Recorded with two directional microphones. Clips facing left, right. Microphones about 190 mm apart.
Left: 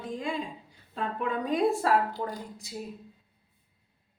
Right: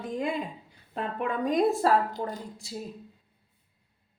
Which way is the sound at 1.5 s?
40° right (ahead or behind).